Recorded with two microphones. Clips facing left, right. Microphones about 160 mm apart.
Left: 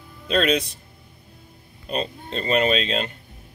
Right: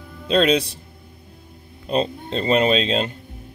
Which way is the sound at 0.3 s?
30° right (ahead or behind).